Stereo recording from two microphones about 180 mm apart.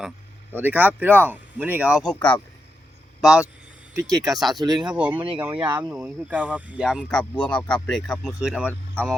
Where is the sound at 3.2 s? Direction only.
5° right (ahead or behind).